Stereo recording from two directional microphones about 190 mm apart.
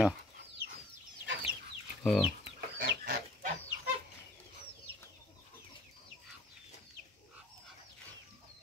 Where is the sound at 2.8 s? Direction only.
60° right (ahead or behind).